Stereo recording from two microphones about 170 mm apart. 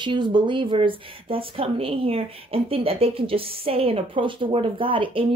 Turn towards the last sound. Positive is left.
turn(degrees=-30)  # may be behind; listen again after turning